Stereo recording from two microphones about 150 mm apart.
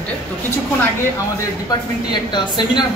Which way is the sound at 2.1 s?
30° left (ahead or behind).